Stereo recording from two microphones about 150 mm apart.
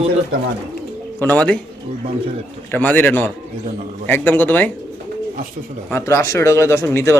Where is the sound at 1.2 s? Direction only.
10° left (ahead or behind).